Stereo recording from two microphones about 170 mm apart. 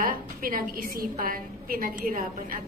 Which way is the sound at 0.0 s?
55° right (ahead or behind).